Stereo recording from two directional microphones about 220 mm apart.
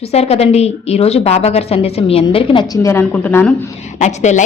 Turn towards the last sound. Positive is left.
turn(degrees=30)  # may be behind; listen again after turning